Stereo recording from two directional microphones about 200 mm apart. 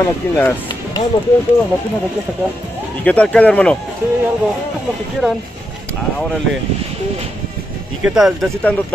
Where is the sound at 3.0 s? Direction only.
5° left (ahead or behind).